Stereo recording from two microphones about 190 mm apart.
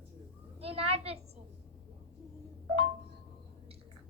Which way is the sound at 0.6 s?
30° right (ahead or behind).